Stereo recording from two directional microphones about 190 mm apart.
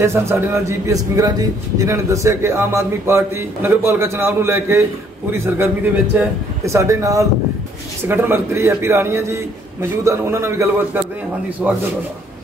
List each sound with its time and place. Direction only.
0.0 s a man's voice: 15° right (ahead or behind)